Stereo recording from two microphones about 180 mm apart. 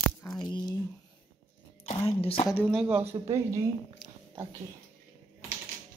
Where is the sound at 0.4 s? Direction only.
20° left (ahead or behind).